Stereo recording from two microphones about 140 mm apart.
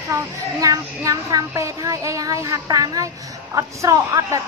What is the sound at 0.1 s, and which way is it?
Speech, 25° right (ahead or behind).